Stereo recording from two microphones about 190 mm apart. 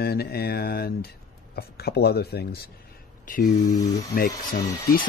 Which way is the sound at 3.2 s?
45° left (ahead or behind).